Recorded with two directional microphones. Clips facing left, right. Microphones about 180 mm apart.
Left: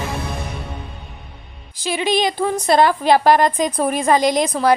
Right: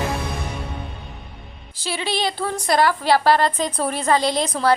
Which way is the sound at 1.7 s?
15° left (ahead or behind).